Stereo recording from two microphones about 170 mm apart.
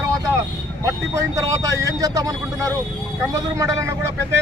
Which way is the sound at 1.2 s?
20° right (ahead or behind).